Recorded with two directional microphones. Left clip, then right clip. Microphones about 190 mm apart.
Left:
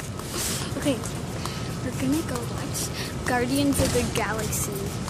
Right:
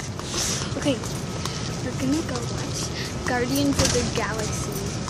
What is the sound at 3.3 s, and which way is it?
Speech, 25° left (ahead or behind).